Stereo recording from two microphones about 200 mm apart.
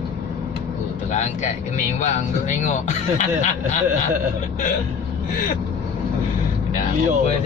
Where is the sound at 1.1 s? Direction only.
35° left (ahead or behind).